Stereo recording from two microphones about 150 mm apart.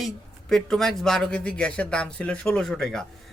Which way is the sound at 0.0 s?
5° left (ahead or behind).